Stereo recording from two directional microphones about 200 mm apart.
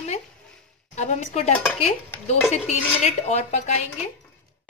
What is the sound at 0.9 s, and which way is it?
Speech, 35° left (ahead or behind).